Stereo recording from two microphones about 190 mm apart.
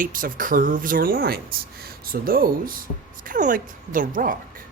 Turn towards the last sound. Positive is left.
turn(degrees=-45)  # may be behind; listen again after turning